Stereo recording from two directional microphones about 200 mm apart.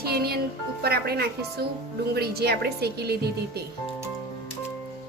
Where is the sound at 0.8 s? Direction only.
50° right (ahead or behind).